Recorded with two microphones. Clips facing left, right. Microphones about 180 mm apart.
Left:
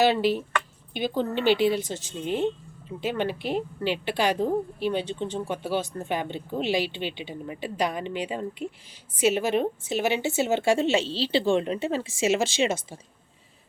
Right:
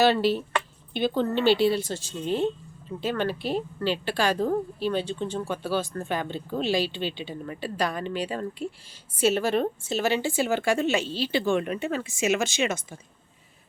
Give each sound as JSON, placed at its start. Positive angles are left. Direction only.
{"t": 0.0, "sound": "a woman's voice", "side_deg": 15}